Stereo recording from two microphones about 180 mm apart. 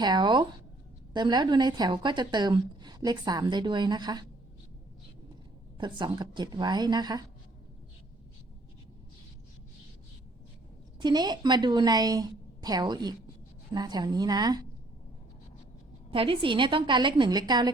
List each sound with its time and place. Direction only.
0.0 s speech: 25° right (ahead or behind)
5.7 s speech: 25° right (ahead or behind)
11.0 s speech: 20° right (ahead or behind)
16.1 s speech: 30° right (ahead or behind)